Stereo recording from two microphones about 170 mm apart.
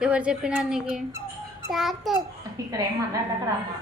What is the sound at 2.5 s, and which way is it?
Speech, 20° right (ahead or behind).